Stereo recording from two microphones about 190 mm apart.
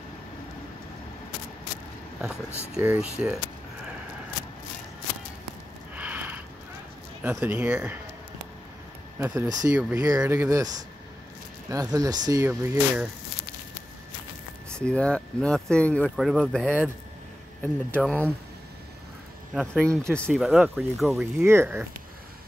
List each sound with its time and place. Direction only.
2.7 s speech: 5° right (ahead or behind)
5.9 s sniff: 10° right (ahead or behind)
7.2 s speech: 10° right (ahead or behind)
9.2 s speech: 10° right (ahead or behind)
14.7 s speech: 5° left (ahead or behind)
19.5 s speech: 5° left (ahead or behind)
21.4 s speech: 10° right (ahead or behind)